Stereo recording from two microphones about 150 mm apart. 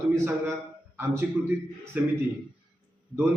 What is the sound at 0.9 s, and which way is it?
Speech, 15° right (ahead or behind).